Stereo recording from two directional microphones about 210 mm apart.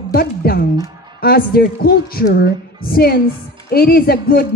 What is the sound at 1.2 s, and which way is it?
A woman's voice, 45° left (ahead or behind).